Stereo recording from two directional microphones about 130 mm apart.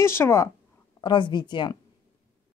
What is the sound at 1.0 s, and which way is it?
Speech, 35° left (ahead or behind).